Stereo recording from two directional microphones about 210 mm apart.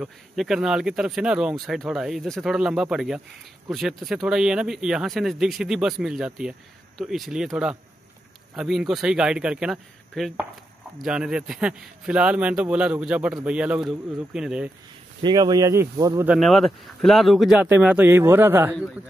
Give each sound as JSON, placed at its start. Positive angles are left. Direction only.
{"t": 0.0, "sound": "speech", "side_deg": -5}
{"t": 15.2, "sound": "speech", "side_deg": -20}
{"t": 16.3, "sound": "speech", "side_deg": 0}